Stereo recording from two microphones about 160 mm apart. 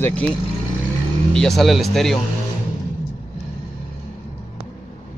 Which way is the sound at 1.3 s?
Centre (ahead or behind).